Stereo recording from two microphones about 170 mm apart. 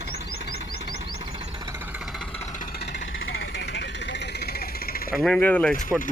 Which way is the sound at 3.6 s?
90° left.